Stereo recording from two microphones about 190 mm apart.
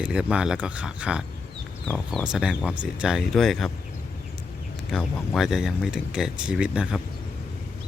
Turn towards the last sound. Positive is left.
turn(degrees=-5)  # may be behind; listen again after turning